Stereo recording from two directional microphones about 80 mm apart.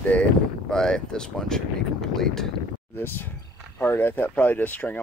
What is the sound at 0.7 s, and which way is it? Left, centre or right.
Speech, centre.